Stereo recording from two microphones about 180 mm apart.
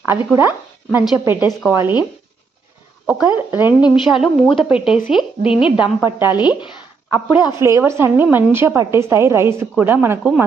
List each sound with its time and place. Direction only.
0.3 s a woman's voice: 10° right (ahead or behind)
3.1 s a woman's voice: 10° right (ahead or behind)
3.8 s a woman's voice: 25° left (ahead or behind)
4.1 s speech: 5° right (ahead or behind)
5.5 s a woman's voice: 30° left (ahead or behind)
6.0 s a woman's voice: 10° right (ahead or behind)
6.4 s a woman's voice: 25° left (ahead or behind)
7.1 s a woman's voice: 10° right (ahead or behind)